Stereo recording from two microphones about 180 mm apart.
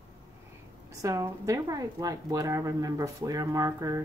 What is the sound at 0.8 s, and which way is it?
Speech, 15° right (ahead or behind).